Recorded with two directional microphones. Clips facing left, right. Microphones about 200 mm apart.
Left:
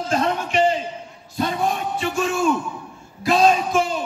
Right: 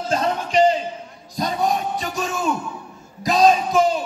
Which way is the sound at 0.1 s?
35° right (ahead or behind).